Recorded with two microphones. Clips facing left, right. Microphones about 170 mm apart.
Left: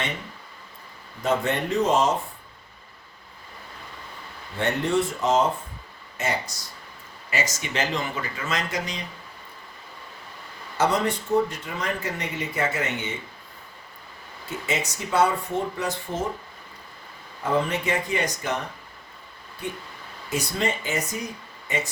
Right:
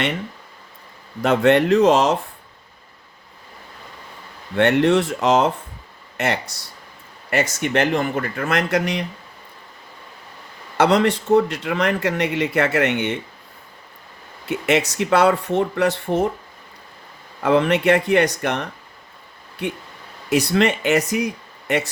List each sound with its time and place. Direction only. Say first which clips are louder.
1.2 s speech: right 9 dB; 70° right (ahead or behind)
4.5 s speech: right 8 dB; 75° right (ahead or behind)
10.8 s speech: right 7 dB; 75° right (ahead or behind)
14.4 s speech: right 9 dB; 70° right (ahead or behind)
17.4 s speech: right 8 dB; 75° right (ahead or behind)
19.6 s speech: right 6 dB; 70° right (ahead or behind)